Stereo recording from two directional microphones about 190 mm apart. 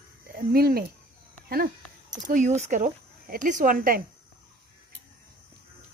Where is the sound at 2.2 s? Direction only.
40° right (ahead or behind).